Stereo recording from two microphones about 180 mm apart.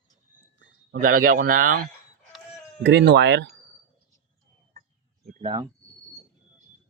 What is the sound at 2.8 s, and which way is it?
Speech, 75° right (ahead or behind).